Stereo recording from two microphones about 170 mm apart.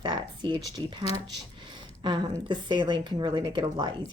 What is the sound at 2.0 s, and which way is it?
A woman's voice, 25° right (ahead or behind).